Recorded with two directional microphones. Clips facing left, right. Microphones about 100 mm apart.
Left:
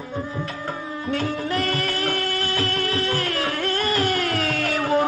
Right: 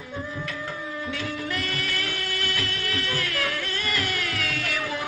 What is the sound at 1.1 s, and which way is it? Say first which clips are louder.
Music: left 9 dB; 40° left (ahead or behind).